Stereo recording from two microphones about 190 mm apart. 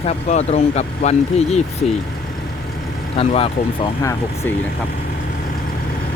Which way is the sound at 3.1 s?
30° left (ahead or behind).